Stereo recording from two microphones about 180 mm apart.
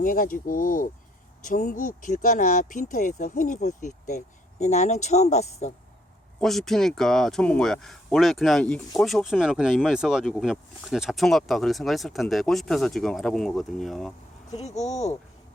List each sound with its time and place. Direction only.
0.0 s speech: 50° left (ahead or behind)
6.4 s speech: centre (ahead or behind)
14.5 s speech: 40° left (ahead or behind)